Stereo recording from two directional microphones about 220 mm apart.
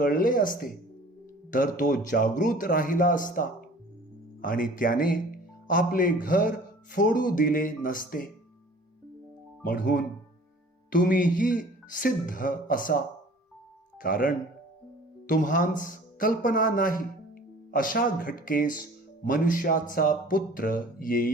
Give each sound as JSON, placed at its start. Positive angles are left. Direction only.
{"t": 0.0, "sound": "speech", "side_deg": 40}
{"t": 9.6, "sound": "speech", "side_deg": 40}
{"t": 14.0, "sound": "speech", "side_deg": 40}